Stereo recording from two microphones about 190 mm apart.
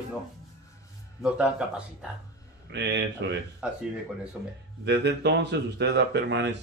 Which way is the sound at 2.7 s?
65° right (ahead or behind).